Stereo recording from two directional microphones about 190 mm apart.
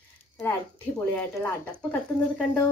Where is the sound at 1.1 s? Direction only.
5° left (ahead or behind).